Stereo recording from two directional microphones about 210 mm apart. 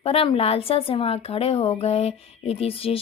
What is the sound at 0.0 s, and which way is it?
A woman's voice, 25° left (ahead or behind).